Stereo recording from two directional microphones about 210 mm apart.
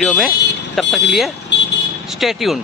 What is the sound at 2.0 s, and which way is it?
Speech, centre (ahead or behind).